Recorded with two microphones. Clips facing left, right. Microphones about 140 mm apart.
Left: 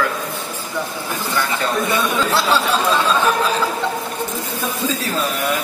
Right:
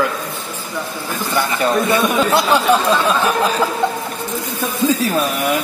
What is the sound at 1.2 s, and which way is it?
Speech, 15° right (ahead or behind).